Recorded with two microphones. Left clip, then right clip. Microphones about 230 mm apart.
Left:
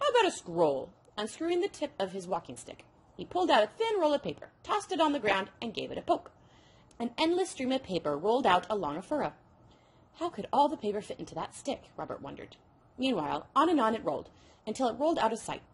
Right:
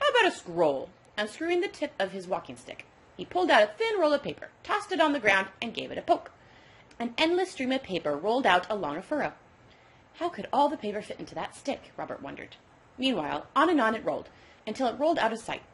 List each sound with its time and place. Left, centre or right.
0.0 s a sound: left
0.4 s a woman's voice: left
8.0 s speech: left
8.3 s a woman's voice: left
10.1 s a woman's voice: left